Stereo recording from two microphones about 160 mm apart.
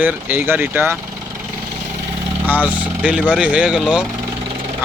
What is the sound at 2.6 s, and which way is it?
Speech, 10° right (ahead or behind).